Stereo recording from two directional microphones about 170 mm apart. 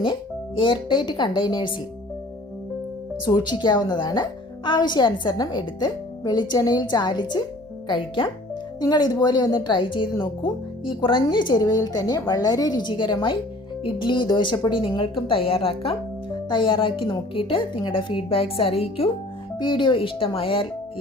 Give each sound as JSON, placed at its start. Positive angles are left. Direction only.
{"t": 0.0, "sound": "a woman's voice", "side_deg": 30}
{"t": 3.2, "sound": "a woman's voice", "side_deg": 25}